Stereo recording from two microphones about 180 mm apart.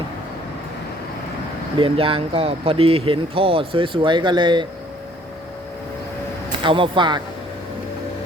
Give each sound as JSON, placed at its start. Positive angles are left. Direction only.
{"t": 1.8, "sound": "speech", "side_deg": -30}
{"t": 6.6, "sound": "speech", "side_deg": -30}